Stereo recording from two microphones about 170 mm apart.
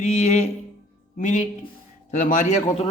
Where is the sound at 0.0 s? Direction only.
40° left (ahead or behind).